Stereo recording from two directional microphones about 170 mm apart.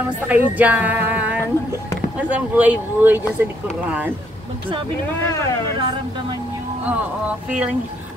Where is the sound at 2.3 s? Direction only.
10° right (ahead or behind).